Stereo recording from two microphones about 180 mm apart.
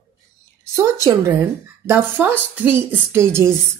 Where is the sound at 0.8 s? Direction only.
15° right (ahead or behind).